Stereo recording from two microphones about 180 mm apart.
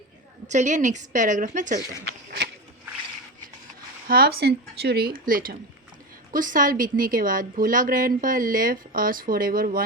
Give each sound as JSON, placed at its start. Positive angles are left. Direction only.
{"t": 0.4, "sound": "a woman's voice", "side_deg": -40}
{"t": 2.0, "sound": "a sound", "side_deg": -65}
{"t": 4.1, "sound": "a woman's voice", "side_deg": -60}